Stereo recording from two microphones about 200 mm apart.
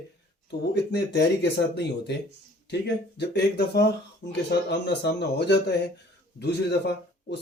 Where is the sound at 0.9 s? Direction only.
55° left (ahead or behind).